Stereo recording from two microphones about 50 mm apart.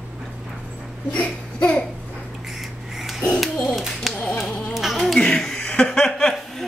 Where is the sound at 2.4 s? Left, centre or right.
Centre.